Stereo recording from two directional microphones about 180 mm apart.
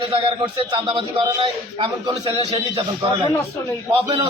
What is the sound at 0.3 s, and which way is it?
A man's voice, 30° right (ahead or behind).